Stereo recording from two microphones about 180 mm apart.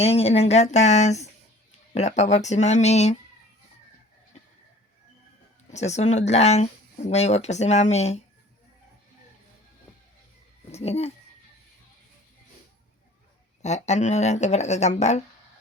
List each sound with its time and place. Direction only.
0.0 s speech: 35° left (ahead or behind)
5.7 s speech: 40° left (ahead or behind)
10.7 s speech: 35° left (ahead or behind)
13.6 s speech: 40° left (ahead or behind)